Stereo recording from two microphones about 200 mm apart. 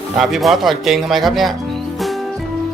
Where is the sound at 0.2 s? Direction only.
Centre (ahead or behind).